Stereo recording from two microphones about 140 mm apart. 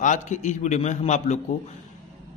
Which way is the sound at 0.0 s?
60° left (ahead or behind).